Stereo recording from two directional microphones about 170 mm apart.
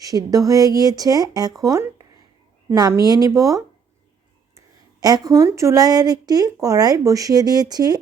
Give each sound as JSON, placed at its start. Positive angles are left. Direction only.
{"t": 0.0, "sound": "speech", "side_deg": -20}